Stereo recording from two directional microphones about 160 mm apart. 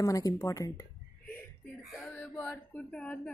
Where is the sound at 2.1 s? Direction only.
15° left (ahead or behind).